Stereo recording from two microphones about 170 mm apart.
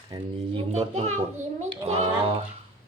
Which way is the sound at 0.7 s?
40° right (ahead or behind).